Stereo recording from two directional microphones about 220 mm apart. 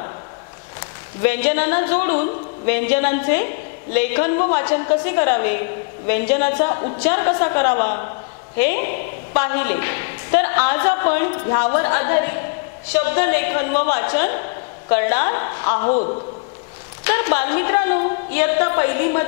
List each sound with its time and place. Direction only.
0.7 s a man's voice: 15° left (ahead or behind)
15.9 s a man's voice: 35° left (ahead or behind)
17.0 s a woman's voice: 15° left (ahead or behind)